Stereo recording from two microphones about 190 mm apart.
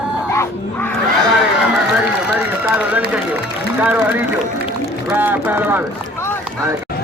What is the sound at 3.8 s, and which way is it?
Speech, 5° right (ahead or behind).